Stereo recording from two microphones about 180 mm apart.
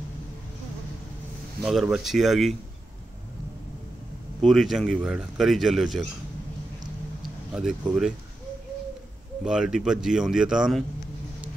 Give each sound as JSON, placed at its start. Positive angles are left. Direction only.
{"t": 1.6, "sound": "speech", "side_deg": 0}
{"t": 4.4, "sound": "speech", "side_deg": 0}
{"t": 7.5, "sound": "speech", "side_deg": -5}
{"t": 9.4, "sound": "speech", "side_deg": -5}